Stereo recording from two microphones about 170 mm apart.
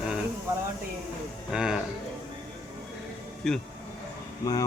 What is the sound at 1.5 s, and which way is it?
Speech, 5° right (ahead or behind).